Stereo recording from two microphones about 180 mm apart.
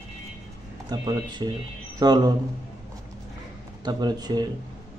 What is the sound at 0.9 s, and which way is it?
Speech, 25° right (ahead or behind).